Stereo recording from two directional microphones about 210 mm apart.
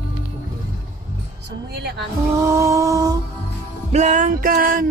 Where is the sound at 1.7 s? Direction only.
55° right (ahead or behind).